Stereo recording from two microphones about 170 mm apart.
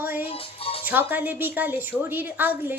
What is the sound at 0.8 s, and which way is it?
A woman's voice, 10° right (ahead or behind).